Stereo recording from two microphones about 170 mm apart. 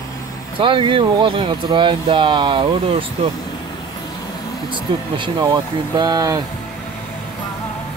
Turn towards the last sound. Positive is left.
turn(degrees=-20)  # may be behind; listen again after turning